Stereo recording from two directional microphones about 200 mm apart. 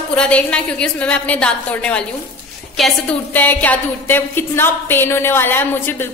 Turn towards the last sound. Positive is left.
turn(degrees=10)  # may be behind; listen again after turning